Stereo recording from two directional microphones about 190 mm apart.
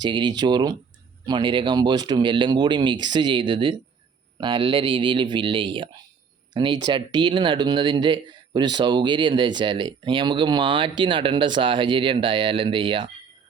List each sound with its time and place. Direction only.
0.0 s speech: 25° right (ahead or behind)